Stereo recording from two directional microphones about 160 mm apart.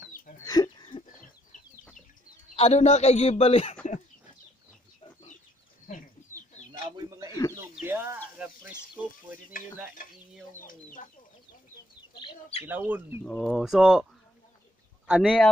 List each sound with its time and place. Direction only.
0.4 s chicken: 25° left (ahead or behind)
1.0 s chicken: 60° left (ahead or behind)
2.5 s a man's voice: 40° left (ahead or behind)
7.0 s a sound: 20° right (ahead or behind)
7.8 s speech: 15° right (ahead or behind)
10.6 s speech: 55° left (ahead or behind)
12.2 s speech: 35° left (ahead or behind)
12.6 s speech: 10° right (ahead or behind)
13.2 s speech: 5° left (ahead or behind)
15.0 s speech: 5° right (ahead or behind)